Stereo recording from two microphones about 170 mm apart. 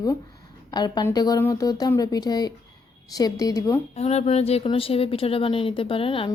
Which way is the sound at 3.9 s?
40° left (ahead or behind).